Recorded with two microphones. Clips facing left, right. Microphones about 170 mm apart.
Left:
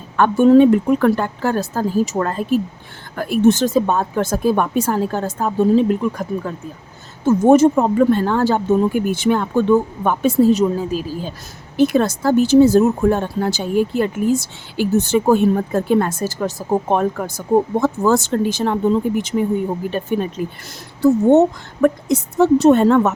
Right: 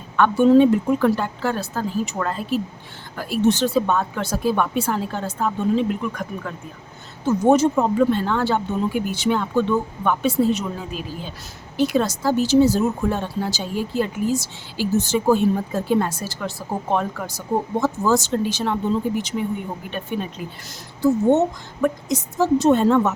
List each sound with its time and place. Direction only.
0.2 s speech: 50° left (ahead or behind); by 6.5 s 35° left (ahead or behind)
7.3 s a woman's voice: 50° left (ahead or behind)
11.8 s speech: 50° left (ahead or behind)
21.0 s a woman's voice: 60° left (ahead or behind)